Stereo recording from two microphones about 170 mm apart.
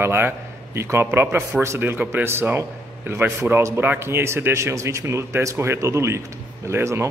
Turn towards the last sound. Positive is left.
turn(degrees=-15)  # may be behind; listen again after turning